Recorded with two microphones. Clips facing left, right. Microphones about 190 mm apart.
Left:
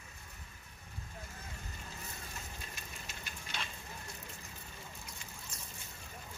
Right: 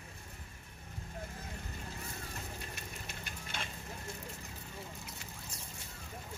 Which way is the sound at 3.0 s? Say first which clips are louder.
Right 2 dB; 55° right (ahead or behind).